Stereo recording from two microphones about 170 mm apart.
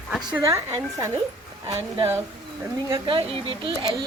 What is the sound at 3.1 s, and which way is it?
Speech, 30° right (ahead or behind).